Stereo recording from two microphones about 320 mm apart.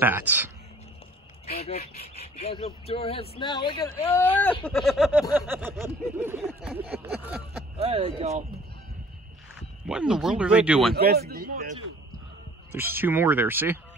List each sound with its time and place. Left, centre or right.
0.0 s a sound: centre
1.4 s speech: centre
6.9 s a sound: centre
7.7 s speech: centre
9.6 s speech: centre
11.0 s speech: right
12.7 s speech: centre